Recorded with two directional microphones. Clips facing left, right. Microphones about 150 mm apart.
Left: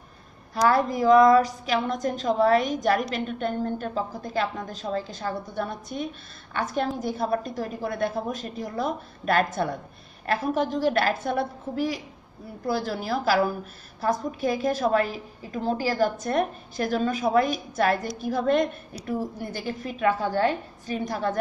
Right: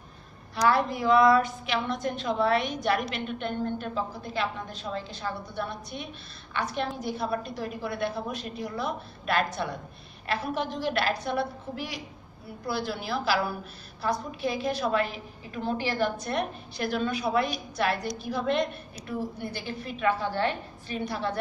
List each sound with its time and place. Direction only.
0.7 s a woman's voice: 40° left (ahead or behind)